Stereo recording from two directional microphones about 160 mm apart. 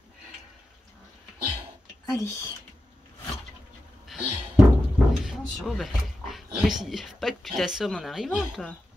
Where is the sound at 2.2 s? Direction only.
20° left (ahead or behind).